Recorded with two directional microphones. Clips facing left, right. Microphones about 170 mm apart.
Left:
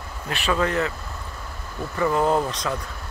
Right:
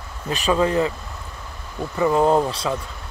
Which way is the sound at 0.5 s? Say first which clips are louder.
Right 4 dB; 20° right (ahead or behind).